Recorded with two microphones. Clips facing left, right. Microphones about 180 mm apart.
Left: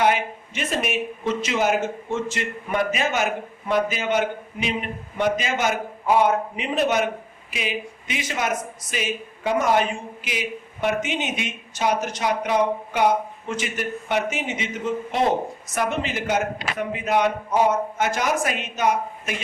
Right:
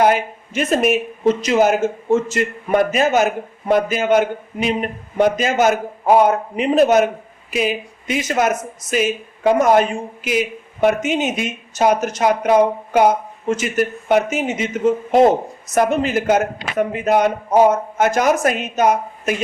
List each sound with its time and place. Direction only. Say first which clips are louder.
0.0 s speech: right 5 dB; 45° right (ahead or behind)